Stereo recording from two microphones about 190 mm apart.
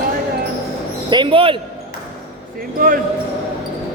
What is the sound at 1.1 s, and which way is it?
Speech, 25° right (ahead or behind).